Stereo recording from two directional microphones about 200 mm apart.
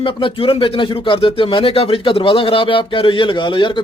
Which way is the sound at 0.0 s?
25° left (ahead or behind).